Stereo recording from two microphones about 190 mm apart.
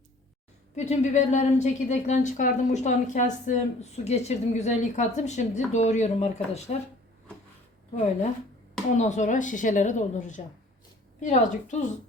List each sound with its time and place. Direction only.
0.8 s a woman's voice: 35° left (ahead or behind)
9.0 s a woman's voice: 40° left (ahead or behind)